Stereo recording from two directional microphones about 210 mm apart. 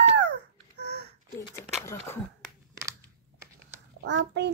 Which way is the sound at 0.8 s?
55° right (ahead or behind).